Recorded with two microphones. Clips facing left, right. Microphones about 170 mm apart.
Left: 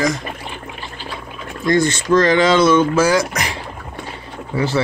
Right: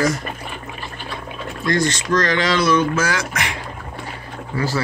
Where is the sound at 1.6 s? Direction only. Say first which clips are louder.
Left 4 dB; 25° left (ahead or behind).